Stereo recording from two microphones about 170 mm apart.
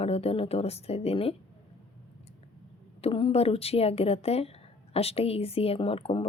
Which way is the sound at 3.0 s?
30° left (ahead or behind).